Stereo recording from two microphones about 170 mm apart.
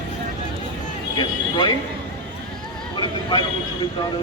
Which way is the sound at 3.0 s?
25° left (ahead or behind).